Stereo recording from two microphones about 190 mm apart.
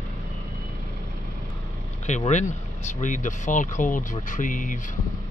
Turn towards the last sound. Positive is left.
turn(degrees=45)  # may be behind; listen again after turning